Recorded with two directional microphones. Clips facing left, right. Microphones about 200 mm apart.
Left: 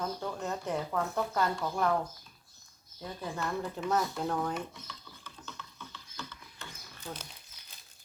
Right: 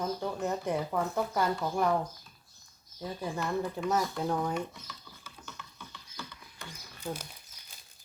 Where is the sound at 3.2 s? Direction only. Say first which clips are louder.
Right 2 dB; 10° right (ahead or behind).